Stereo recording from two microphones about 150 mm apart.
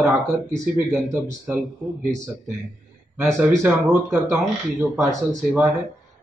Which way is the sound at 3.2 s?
15° right (ahead or behind).